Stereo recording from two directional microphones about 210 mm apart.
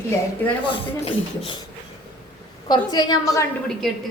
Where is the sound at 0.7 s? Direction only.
25° left (ahead or behind).